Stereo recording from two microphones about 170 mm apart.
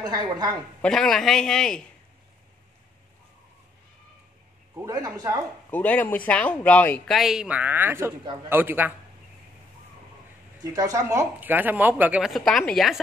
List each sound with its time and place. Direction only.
0.0 s a woman's voice: 25° right (ahead or behind)
0.8 s a man's voice: 5° left (ahead or behind)
4.8 s a woman's voice: 20° right (ahead or behind)
5.7 s speech: 10° left (ahead or behind)
7.2 s a woman's voice: centre (ahead or behind)
10.7 s a woman's voice: 20° right (ahead or behind); by 13.0 s centre (ahead or behind)